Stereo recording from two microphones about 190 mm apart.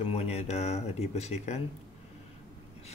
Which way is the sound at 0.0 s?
30° left (ahead or behind).